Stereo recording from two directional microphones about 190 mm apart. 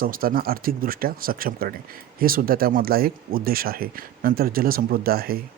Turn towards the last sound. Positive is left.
turn(degrees=-50)  # may be behind; listen again after turning